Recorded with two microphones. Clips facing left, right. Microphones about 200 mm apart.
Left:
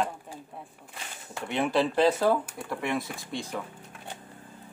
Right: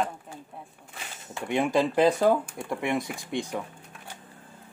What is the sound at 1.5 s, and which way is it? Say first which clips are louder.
Speech: right 2 dB; 15° right (ahead or behind).